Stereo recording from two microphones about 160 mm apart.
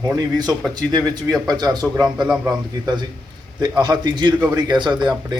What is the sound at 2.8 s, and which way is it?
A man's voice, 25° right (ahead or behind).